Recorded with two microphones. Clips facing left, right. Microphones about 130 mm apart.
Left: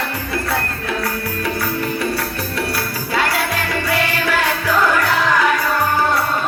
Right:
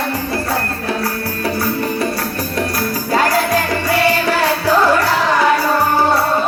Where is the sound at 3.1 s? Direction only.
40° right (ahead or behind).